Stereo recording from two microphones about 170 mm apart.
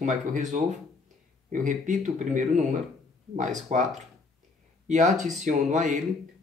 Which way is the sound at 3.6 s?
45° right (ahead or behind).